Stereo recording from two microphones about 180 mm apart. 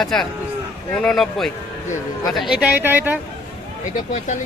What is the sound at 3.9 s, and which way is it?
Speech, 45° left (ahead or behind).